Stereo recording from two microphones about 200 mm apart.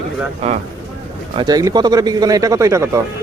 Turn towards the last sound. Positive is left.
turn(degrees=-15)  # may be behind; listen again after turning